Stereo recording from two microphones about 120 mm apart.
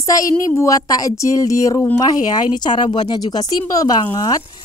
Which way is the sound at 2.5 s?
40° left (ahead or behind).